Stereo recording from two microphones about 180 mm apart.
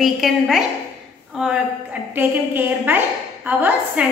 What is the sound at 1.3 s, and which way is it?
A woman's voice, 5° right (ahead or behind).